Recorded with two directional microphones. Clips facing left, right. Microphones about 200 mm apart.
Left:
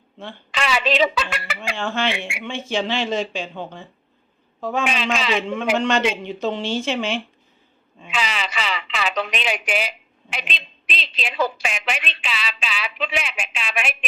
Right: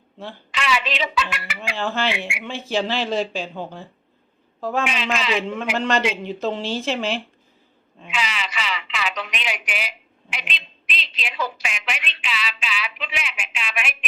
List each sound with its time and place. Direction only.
0.5 s a woman's voice: 35° left (ahead or behind)
1.5 s speech: centre (ahead or behind)
8.1 s speech: 35° left (ahead or behind)